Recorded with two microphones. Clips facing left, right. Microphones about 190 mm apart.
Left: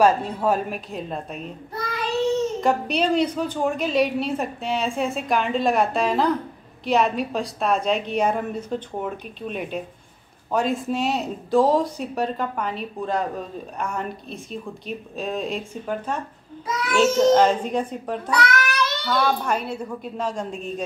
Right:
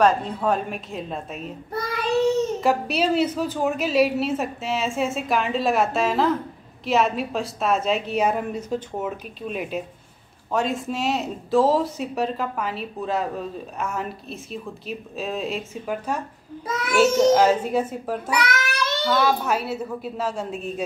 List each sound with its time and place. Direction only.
0.0 s a woman's voice: 10° left (ahead or behind)
2.6 s a woman's voice: 5° right (ahead or behind)
18.4 s child singing: 25° right (ahead or behind)
19.0 s a woman's voice: 5° right (ahead or behind)